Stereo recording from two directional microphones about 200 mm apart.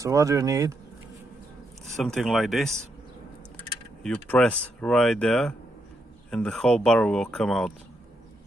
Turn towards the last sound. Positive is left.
turn(degrees=0)  # may be behind; listen again after turning